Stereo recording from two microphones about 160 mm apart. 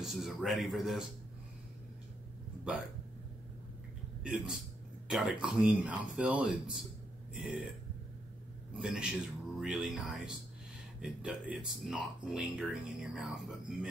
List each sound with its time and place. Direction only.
0.0 s speech: centre (ahead or behind)
4.2 s speech: 5° right (ahead or behind)
8.7 s speech: 5° right (ahead or behind)